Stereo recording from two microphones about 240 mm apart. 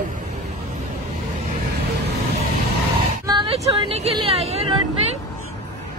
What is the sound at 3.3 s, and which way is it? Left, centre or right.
Speech, right.